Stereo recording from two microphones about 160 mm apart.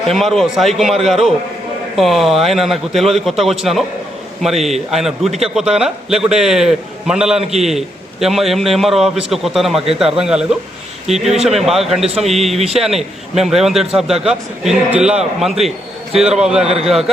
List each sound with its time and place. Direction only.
0.1 s a man's voice: centre (ahead or behind)
12.5 s speech: 40° right (ahead or behind)
12.8 s a man's voice: centre (ahead or behind)